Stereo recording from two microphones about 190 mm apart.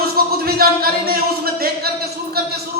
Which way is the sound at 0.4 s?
55° right (ahead or behind).